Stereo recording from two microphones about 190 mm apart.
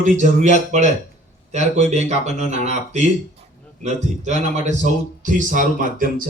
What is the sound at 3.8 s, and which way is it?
Speech, 40° right (ahead or behind).